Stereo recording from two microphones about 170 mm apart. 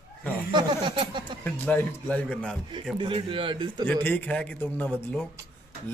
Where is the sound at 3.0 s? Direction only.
30° right (ahead or behind).